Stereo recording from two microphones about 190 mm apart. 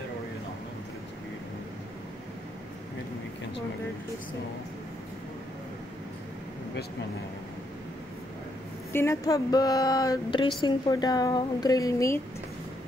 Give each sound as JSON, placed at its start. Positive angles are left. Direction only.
{"t": 8.9, "sound": "speech", "side_deg": 15}